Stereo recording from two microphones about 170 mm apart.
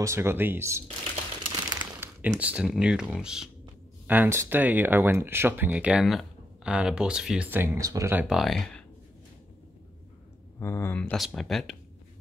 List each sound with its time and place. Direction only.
0.0 s speech: 15° right (ahead or behind)
1.4 s crumpling: 25° right (ahead or behind)
2.0 s speech: 10° right (ahead or behind)
10.6 s speech: 15° left (ahead or behind)